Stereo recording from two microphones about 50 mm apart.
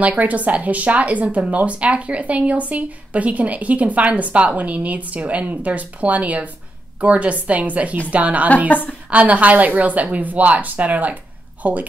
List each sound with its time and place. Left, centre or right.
0.0 s speech: right
8.6 s a woman's voice: left
9.1 s speech: right